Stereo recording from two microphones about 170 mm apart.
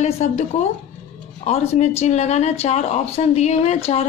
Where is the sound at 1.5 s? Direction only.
40° left (ahead or behind).